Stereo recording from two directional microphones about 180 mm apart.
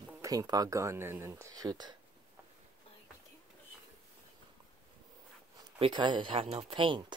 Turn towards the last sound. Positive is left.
turn(degrees=-25)  # may be behind; listen again after turning